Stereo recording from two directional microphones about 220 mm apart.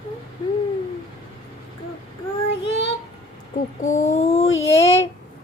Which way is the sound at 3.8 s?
35° left (ahead or behind).